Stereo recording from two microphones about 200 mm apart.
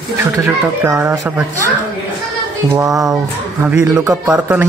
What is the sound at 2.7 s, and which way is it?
Speech, 15° right (ahead or behind).